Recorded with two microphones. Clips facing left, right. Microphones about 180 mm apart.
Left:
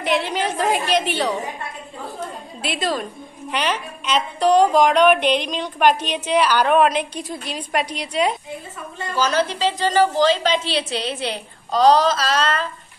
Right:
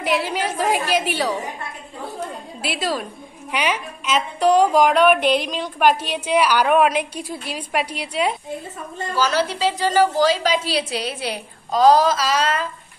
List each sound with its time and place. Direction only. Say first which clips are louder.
0.0 s a woman's voice: left 1 dB; 5° right (ahead or behind)
2.1 s a sound: right 1 dB; 5° right (ahead or behind)
3.5 s a woman's voice: even; 10° right (ahead or behind)